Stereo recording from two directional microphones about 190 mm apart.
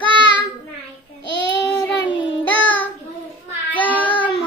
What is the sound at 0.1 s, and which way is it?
Child singing, 25° right (ahead or behind).